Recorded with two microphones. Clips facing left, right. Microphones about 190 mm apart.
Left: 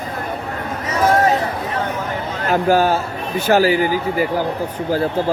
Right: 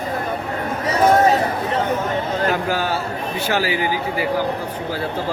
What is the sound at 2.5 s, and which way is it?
Speech, 45° left (ahead or behind).